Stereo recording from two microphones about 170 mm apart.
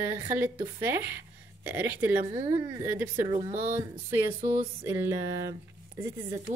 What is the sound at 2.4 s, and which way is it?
Speech, 20° right (ahead or behind).